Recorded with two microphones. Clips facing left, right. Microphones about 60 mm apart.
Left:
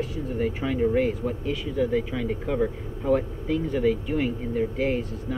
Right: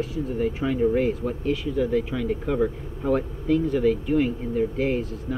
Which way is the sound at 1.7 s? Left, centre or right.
Centre.